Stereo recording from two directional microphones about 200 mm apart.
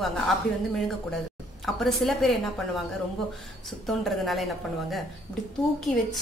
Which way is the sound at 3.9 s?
Centre (ahead or behind).